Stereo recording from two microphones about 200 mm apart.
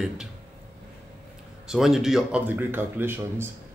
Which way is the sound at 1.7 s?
Centre (ahead or behind).